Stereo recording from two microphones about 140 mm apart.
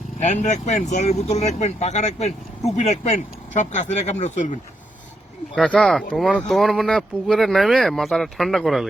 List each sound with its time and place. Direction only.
0.2 s speech: 55° left (ahead or behind)
5.5 s speech: 5° left (ahead or behind)